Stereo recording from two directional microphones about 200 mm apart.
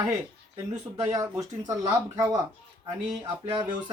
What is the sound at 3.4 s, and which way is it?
Speech, 25° right (ahead or behind).